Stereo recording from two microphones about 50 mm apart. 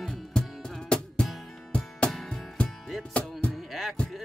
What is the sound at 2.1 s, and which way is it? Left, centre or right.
Music, centre.